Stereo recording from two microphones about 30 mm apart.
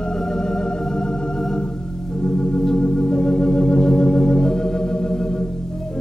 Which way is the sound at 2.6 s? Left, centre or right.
Left.